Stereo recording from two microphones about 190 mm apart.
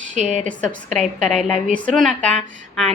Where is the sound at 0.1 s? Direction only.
40° right (ahead or behind).